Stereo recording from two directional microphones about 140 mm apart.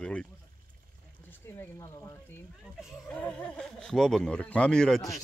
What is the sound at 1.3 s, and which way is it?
Speech, 20° left (ahead or behind).